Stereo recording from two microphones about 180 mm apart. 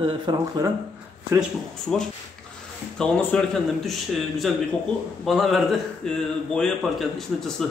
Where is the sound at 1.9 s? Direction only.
Centre (ahead or behind).